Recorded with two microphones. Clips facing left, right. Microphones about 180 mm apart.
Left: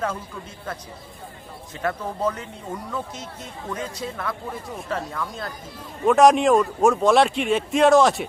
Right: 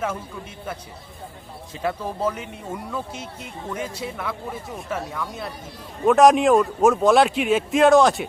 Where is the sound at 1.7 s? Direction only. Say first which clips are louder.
Right 1 dB; 10° right (ahead or behind).